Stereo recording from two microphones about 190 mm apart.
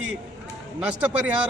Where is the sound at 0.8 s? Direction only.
5° right (ahead or behind).